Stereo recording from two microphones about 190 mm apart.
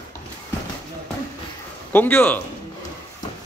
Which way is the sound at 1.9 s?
10° left (ahead or behind).